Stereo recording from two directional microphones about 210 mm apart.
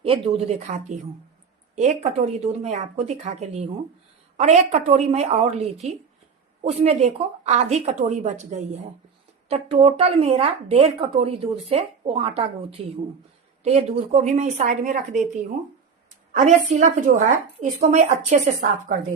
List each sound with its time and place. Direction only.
0.0 s speech: 25° right (ahead or behind)